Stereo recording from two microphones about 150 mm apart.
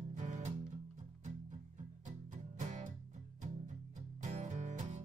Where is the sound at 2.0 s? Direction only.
55° right (ahead or behind).